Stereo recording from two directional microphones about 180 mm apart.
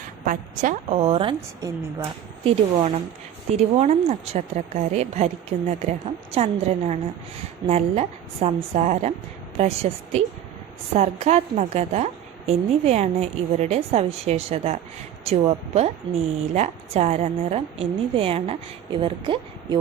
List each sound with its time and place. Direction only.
0.3 s a woman's voice: 45° right (ahead or behind); by 19.8 s 30° right (ahead or behind)